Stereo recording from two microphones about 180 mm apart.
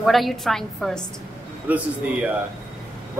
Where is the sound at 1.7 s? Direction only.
10° right (ahead or behind).